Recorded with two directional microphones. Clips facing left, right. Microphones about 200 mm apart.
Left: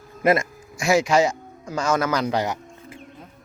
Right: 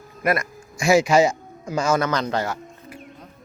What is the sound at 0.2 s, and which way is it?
Speech, 25° left (ahead or behind).